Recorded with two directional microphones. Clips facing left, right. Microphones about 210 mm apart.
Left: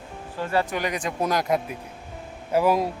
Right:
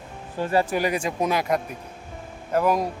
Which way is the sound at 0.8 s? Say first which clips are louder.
Right 3 dB; 35° right (ahead or behind).